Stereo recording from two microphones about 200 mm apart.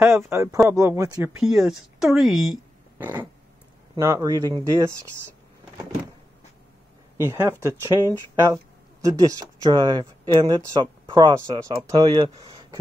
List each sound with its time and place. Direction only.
0.0 s speech: 10° right (ahead or behind)
7.2 s speech: 10° right (ahead or behind)
9.0 s speech: 15° right (ahead or behind)